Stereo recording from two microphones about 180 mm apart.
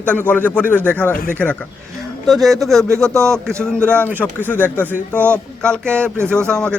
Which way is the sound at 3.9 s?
5° left (ahead or behind).